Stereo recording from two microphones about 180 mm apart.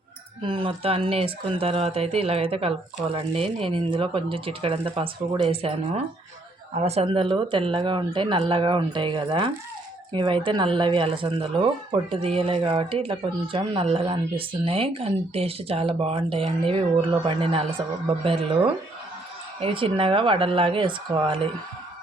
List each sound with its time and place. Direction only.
0.4 s speech: 30° right (ahead or behind)